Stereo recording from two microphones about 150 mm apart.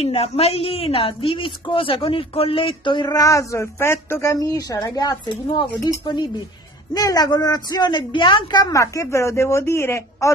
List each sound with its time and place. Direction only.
0.0 s a woman's voice: 40° left (ahead or behind); by 10.3 s 15° left (ahead or behind)